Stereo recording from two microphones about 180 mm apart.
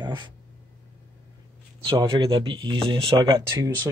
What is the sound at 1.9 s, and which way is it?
Speech, 25° right (ahead or behind).